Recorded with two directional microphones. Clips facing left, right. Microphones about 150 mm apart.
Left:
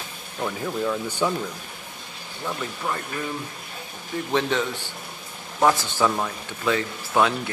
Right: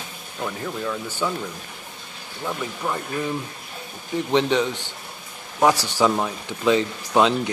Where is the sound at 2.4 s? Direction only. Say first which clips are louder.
Right 2 dB; 10° right (ahead or behind).